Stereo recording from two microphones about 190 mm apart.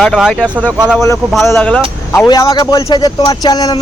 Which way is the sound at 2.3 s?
20° left (ahead or behind).